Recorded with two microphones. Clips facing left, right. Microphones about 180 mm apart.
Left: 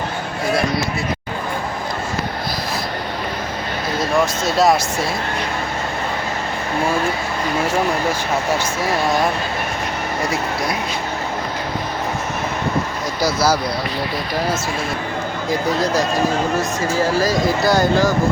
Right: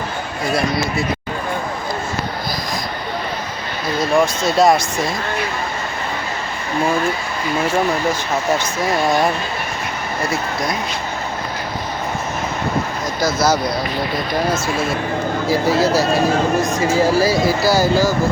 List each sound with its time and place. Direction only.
4.4 s speech: centre (ahead or behind)
15.4 s speech: 5° right (ahead or behind)